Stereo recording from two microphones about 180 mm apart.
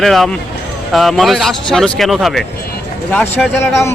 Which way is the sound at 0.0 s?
Centre (ahead or behind).